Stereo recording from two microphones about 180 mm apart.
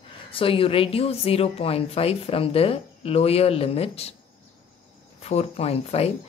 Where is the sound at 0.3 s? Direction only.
30° left (ahead or behind).